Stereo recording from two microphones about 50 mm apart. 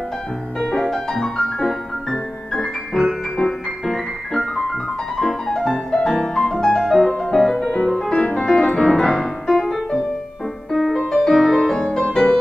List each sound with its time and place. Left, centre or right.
0.6 s music: centre
8.1 s music: left; by 11.8 s centre
12.1 s music: centre